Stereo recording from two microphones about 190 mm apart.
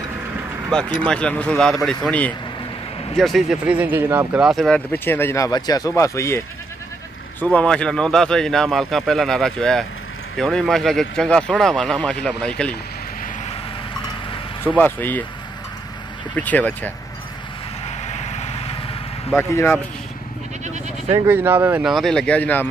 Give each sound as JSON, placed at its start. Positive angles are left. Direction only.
{"t": 0.7, "sound": "speech", "side_deg": 5}
{"t": 14.8, "sound": "speech", "side_deg": 10}
{"t": 16.3, "sound": "speech", "side_deg": 10}
{"t": 17.8, "sound": "vehicle", "side_deg": 35}
{"t": 19.3, "sound": "speech", "side_deg": 15}
{"t": 21.1, "sound": "speech", "side_deg": -10}